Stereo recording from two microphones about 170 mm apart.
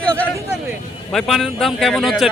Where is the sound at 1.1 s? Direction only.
Centre (ahead or behind).